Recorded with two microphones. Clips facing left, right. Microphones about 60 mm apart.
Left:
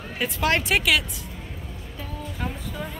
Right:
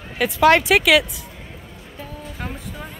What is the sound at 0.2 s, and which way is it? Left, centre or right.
Speech, right.